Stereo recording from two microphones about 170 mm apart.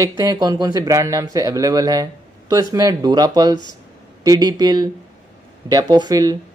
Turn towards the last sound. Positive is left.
turn(degrees=-20)  # may be behind; listen again after turning